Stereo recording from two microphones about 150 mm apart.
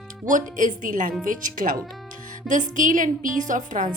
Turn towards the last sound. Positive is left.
turn(degrees=-60)  # may be behind; listen again after turning